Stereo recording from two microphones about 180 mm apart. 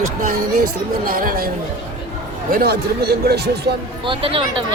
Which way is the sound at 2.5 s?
55° right (ahead or behind).